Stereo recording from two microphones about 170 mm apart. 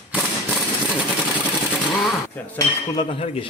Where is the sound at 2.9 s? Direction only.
30° left (ahead or behind).